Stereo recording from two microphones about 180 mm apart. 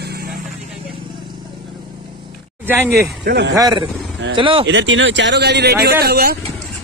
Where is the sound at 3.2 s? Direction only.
65° right (ahead or behind).